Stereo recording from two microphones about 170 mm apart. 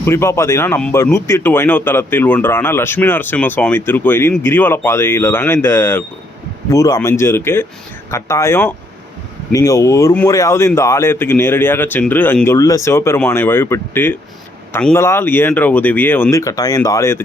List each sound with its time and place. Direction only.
0.0 s speech: 15° left (ahead or behind)